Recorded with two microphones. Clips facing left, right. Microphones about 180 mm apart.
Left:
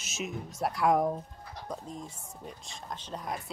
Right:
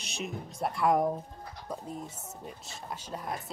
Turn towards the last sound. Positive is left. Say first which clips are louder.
# even
turn(degrees=-5)  # may be behind; listen again after turning